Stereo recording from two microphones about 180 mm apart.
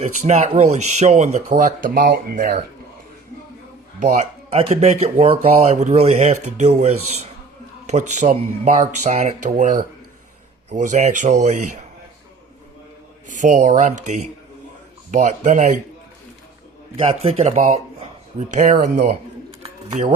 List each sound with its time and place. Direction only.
0.0 s speech: 35° right (ahead or behind)
4.0 s speech: 40° right (ahead or behind)
13.2 s speech: 45° right (ahead or behind)
17.1 s speech: 35° right (ahead or behind)
19.6 s bird: 35° right (ahead or behind)